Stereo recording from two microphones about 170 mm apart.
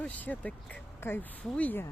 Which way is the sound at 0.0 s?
10° left (ahead or behind).